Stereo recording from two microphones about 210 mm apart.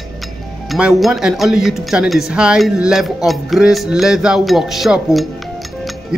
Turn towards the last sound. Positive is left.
turn(degrees=0)  # may be behind; listen again after turning